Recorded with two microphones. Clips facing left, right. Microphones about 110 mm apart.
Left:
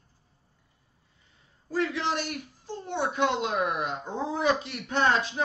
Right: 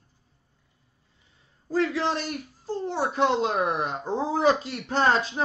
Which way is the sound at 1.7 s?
30° right (ahead or behind).